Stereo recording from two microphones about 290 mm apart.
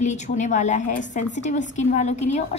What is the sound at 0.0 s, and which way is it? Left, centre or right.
A woman's voice, left.